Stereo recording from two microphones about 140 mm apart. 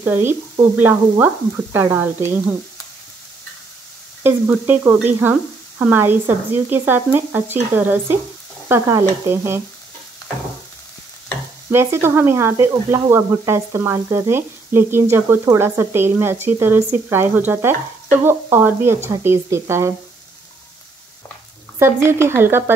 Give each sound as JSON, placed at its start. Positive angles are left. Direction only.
{"t": 0.0, "sound": "speech", "side_deg": -15}
{"t": 4.2, "sound": "speech", "side_deg": -15}
{"t": 8.6, "sound": "stir", "side_deg": -20}
{"t": 9.2, "sound": "speech", "side_deg": -20}
{"t": 11.7, "sound": "speech", "side_deg": -20}
{"t": 21.7, "sound": "speech", "side_deg": -20}